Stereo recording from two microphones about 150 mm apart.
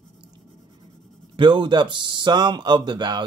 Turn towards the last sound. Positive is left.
turn(degrees=-30)  # may be behind; listen again after turning